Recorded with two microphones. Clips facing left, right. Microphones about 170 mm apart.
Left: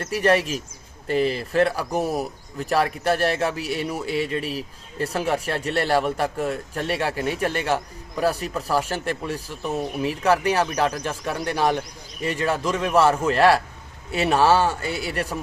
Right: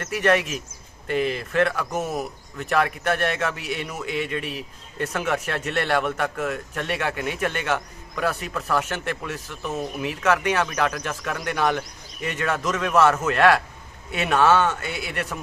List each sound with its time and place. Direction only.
0.0 s a man's voice: 35° left (ahead or behind)